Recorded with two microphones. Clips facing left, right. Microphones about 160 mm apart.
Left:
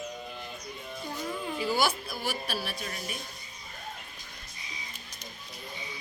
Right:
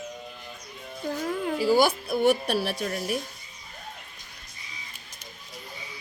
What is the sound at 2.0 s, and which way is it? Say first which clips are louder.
A woman's voice: right 12 dB; 60° right (ahead or behind).